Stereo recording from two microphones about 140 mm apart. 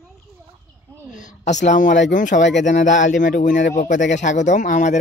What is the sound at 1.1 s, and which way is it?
Speech, 60° left (ahead or behind).